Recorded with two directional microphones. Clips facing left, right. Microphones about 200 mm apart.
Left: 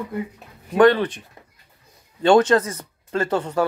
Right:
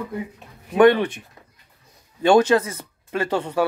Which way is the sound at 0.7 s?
20° right (ahead or behind).